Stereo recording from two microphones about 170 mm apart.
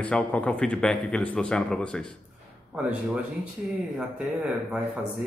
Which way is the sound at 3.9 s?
5° right (ahead or behind).